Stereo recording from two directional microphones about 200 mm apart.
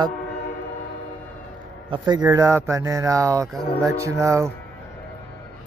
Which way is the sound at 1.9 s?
20° right (ahead or behind).